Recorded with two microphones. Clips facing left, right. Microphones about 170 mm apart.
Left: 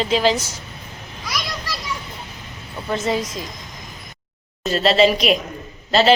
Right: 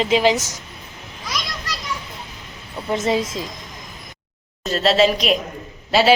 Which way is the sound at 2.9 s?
25° right (ahead or behind).